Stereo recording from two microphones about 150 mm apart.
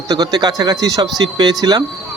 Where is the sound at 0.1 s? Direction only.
25° right (ahead or behind).